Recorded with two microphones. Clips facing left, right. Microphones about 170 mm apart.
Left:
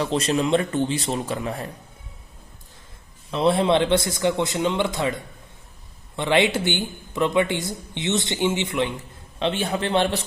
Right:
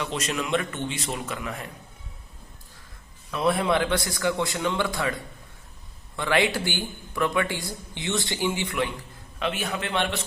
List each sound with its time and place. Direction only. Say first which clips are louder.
0.0 s a man's voice: left 7 dB; 35° left (ahead or behind)
3.3 s speech: left 4 dB; 25° left (ahead or behind)